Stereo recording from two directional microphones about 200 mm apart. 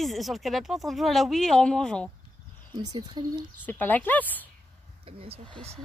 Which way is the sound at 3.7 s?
10° left (ahead or behind).